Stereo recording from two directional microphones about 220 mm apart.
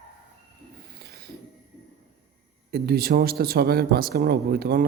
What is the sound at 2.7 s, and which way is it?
Speech, 45° right (ahead or behind).